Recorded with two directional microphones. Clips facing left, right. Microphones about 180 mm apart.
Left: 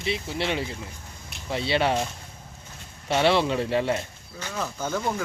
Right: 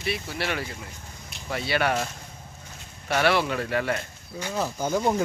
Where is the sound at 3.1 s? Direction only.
25° left (ahead or behind).